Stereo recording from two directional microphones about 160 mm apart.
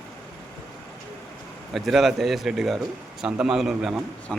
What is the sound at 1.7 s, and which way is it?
A man's voice, centre (ahead or behind).